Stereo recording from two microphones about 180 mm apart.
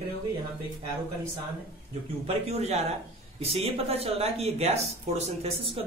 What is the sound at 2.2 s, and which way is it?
Speech, 35° right (ahead or behind).